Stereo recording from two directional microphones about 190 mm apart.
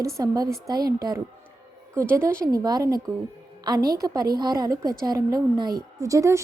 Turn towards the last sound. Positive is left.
turn(degrees=-15)  # may be behind; listen again after turning